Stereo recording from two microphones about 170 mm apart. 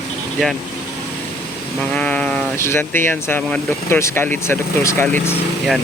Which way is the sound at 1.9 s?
5° left (ahead or behind).